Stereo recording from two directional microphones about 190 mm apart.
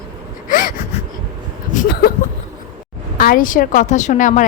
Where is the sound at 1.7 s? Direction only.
50° left (ahead or behind).